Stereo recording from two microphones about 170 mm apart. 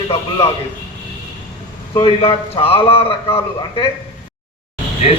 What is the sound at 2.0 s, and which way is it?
Speech, 35° left (ahead or behind).